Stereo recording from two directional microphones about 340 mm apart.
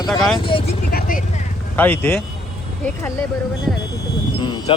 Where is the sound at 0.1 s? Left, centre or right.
Centre.